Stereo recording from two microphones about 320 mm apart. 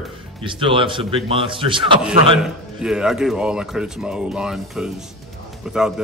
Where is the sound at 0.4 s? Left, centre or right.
Centre.